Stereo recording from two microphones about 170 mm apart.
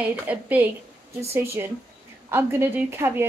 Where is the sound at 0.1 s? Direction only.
10° right (ahead or behind).